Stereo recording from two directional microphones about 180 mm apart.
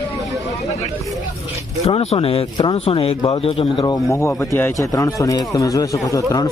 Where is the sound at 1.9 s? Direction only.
35° left (ahead or behind).